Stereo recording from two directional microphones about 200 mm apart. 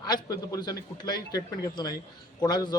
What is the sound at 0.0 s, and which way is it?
Speech, 20° left (ahead or behind).